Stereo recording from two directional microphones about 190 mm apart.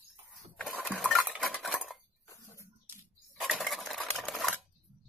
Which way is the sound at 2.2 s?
15° left (ahead or behind).